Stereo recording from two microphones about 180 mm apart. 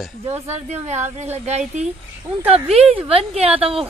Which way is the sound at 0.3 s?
40° right (ahead or behind).